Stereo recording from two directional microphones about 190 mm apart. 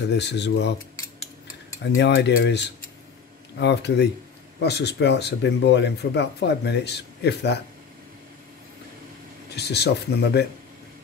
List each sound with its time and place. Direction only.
0.1 s speech: 65° left (ahead or behind)
2.0 s speech: 65° left (ahead or behind)
9.6 s speech: 60° left (ahead or behind)